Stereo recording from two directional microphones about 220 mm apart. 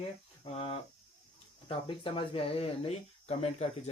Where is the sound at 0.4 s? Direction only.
25° left (ahead or behind).